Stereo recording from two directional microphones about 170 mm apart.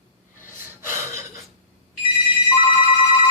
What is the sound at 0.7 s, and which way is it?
Gasp, 15° right (ahead or behind).